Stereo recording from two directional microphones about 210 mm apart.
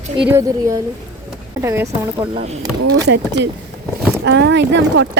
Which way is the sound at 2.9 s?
55° right (ahead or behind).